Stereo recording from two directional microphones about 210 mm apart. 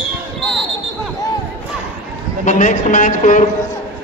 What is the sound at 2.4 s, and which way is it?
A man's voice, 35° left (ahead or behind).